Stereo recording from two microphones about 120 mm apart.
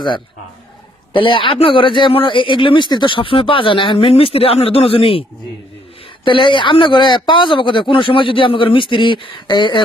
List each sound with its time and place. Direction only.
1.1 s a man's voice: 45° left (ahead or behind)
6.2 s a man's voice: 45° left (ahead or behind)